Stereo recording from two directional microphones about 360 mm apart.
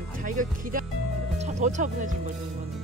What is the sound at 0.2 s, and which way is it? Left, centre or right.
Speech, right.